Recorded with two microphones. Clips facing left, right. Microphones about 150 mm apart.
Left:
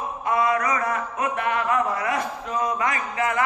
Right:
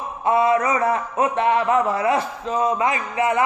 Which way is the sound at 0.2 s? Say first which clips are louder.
Right 5 dB; 30° right (ahead or behind).